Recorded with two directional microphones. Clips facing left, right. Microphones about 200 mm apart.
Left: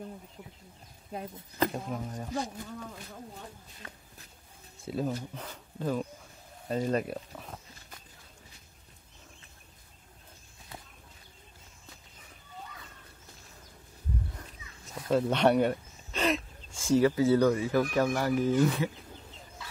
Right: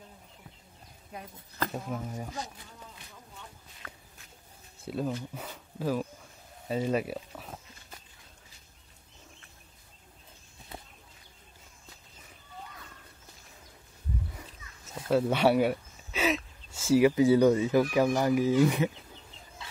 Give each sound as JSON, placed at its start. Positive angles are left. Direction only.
{"t": 1.7, "sound": "speech", "side_deg": -5}
{"t": 2.4, "sound": "speech", "side_deg": 50}
{"t": 3.8, "sound": "walk", "side_deg": 20}
{"t": 4.8, "sound": "speech", "side_deg": 0}
{"t": 6.7, "sound": "a sound", "side_deg": -5}
{"t": 15.0, "sound": "a sound", "side_deg": -5}
{"t": 17.1, "sound": "speech", "side_deg": -15}